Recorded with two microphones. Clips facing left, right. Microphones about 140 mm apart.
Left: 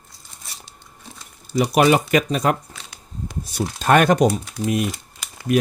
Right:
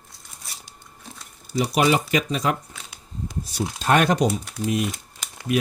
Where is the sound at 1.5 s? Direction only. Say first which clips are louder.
Left 4 dB; 55° left (ahead or behind).